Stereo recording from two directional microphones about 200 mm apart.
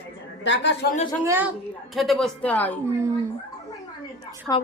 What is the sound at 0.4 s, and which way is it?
Speech, 65° left (ahead or behind).